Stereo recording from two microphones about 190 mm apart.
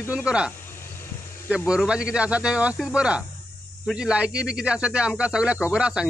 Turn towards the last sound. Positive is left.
turn(degrees=-5)  # may be behind; listen again after turning